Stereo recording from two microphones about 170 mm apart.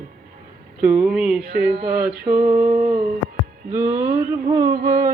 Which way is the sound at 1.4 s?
65° right (ahead or behind).